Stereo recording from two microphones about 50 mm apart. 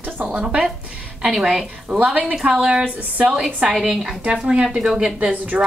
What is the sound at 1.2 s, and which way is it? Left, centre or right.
Speech, centre.